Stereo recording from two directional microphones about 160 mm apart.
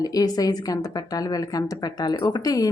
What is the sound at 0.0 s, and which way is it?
Speech, 25° left (ahead or behind).